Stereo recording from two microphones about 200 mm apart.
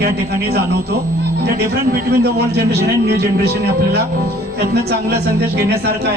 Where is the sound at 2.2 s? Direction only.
55° right (ahead or behind).